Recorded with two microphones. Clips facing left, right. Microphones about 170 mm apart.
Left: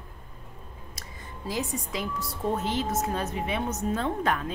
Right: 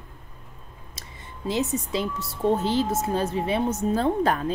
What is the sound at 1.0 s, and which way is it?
Speech, 25° right (ahead or behind).